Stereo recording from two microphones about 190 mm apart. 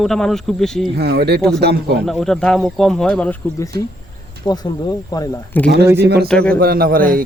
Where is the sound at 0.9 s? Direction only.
55° right (ahead or behind).